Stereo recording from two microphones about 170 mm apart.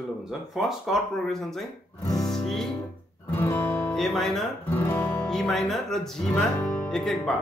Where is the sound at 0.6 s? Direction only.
Centre (ahead or behind).